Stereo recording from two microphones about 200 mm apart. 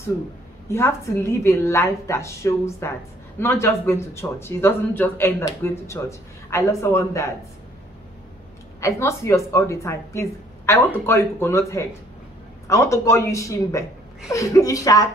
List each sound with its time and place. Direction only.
0.7 s speech: 15° left (ahead or behind)
8.8 s speech: 15° left (ahead or behind)